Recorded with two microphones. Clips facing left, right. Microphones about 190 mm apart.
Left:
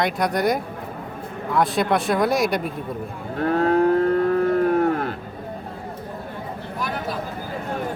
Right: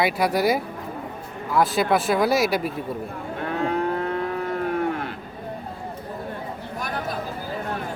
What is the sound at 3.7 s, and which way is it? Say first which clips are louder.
Livestock: left 9 dB; 40° left (ahead or behind).